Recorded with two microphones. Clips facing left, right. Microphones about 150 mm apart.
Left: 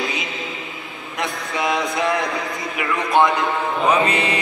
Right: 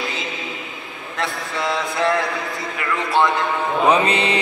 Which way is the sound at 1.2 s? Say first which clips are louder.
Left 1 dB; 20° left (ahead or behind).